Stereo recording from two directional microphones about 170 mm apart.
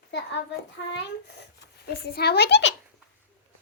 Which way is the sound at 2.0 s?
70° left (ahead or behind).